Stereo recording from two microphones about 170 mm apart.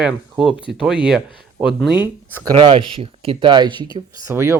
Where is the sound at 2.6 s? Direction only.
30° right (ahead or behind).